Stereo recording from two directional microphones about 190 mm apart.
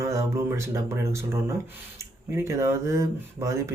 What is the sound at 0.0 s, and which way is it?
Speech, 15° right (ahead or behind).